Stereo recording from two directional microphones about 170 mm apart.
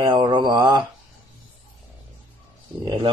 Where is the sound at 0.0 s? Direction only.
30° right (ahead or behind).